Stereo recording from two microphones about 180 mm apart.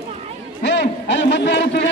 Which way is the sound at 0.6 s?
75° left (ahead or behind).